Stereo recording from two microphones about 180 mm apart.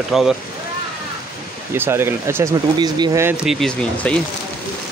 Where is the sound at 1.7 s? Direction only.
15° right (ahead or behind).